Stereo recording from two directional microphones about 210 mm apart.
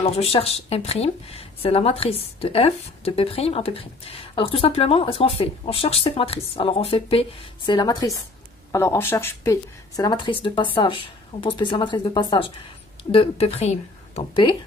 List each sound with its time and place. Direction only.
0.0 s speech: 30° left (ahead or behind)